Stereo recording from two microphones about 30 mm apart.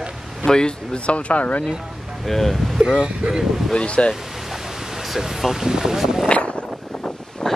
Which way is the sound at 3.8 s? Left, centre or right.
Left.